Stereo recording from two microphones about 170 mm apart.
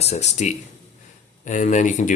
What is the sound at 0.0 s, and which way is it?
Speech, 40° left (ahead or behind).